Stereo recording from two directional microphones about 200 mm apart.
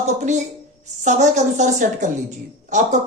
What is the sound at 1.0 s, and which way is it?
Speech, 35° right (ahead or behind).